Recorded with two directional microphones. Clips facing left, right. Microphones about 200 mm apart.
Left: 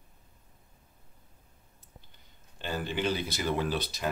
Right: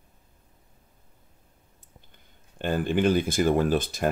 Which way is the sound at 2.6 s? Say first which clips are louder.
Right 8 dB; 50° right (ahead or behind).